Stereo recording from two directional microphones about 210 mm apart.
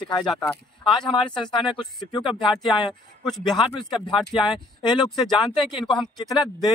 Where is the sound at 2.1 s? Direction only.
20° left (ahead or behind).